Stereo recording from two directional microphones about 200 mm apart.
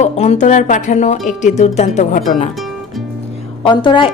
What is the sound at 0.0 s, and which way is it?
Speech, 35° left (ahead or behind).